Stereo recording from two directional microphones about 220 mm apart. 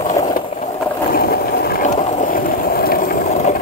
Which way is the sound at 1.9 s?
30° left (ahead or behind).